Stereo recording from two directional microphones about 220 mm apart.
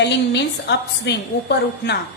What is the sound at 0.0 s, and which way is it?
A woman's voice, 50° left (ahead or behind).